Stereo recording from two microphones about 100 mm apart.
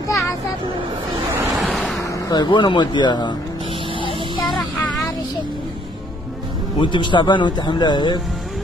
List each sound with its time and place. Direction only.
1.3 s vehicle: 30° right (ahead or behind)
1.6 s vehicle: centre (ahead or behind)
2.0 s speech: 35° left (ahead or behind)
6.8 s speech: 50° left (ahead or behind)